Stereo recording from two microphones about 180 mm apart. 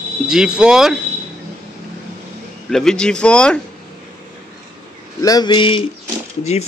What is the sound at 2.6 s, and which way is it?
Speech, 5° left (ahead or behind).